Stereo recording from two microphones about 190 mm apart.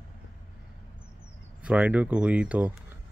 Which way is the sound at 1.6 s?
5° right (ahead or behind).